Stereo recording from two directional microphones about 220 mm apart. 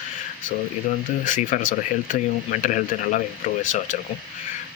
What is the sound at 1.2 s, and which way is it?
Speech, 35° left (ahead or behind).